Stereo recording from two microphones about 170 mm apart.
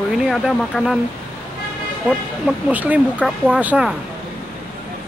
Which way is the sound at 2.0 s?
5° right (ahead or behind).